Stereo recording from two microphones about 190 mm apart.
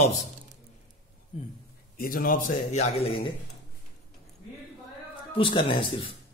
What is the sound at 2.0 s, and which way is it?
A man's voice, 50° left (ahead or behind).